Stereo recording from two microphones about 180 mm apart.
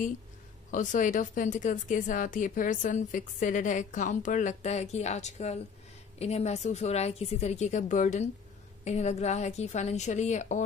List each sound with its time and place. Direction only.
0.7 s a woman's voice: 45° left (ahead or behind)